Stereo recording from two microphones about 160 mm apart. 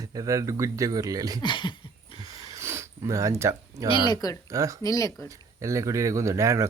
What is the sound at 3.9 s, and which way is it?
Speech, 30° left (ahead or behind).